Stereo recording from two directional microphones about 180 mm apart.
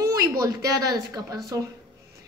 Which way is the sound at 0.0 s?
20° right (ahead or behind).